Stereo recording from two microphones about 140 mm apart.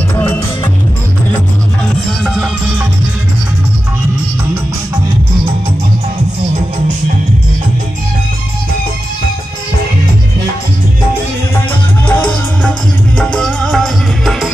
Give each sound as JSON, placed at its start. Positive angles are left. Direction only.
{"t": 0.1, "sound": "music", "side_deg": 15}
{"t": 2.2, "sound": "music", "side_deg": 0}
{"t": 12.1, "sound": "music", "side_deg": 10}